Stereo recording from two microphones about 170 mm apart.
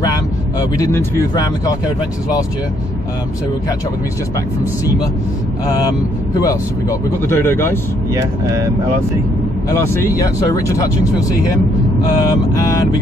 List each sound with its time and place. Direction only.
0.0 s speech: 20° left (ahead or behind)
6.9 s speech: 15° left (ahead or behind)
10.2 s speech: 20° left (ahead or behind)
12.5 s speech: 20° left (ahead or behind)